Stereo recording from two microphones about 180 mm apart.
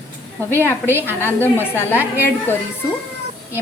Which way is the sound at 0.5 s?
10° left (ahead or behind).